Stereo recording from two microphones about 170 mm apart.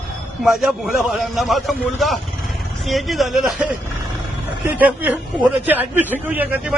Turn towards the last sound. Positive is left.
turn(degrees=-10)  # may be behind; listen again after turning